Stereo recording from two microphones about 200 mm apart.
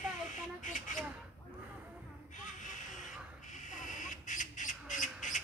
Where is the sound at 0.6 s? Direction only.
40° left (ahead or behind).